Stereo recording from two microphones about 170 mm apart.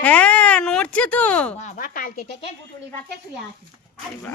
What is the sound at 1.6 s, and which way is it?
Speech, 45° left (ahead or behind).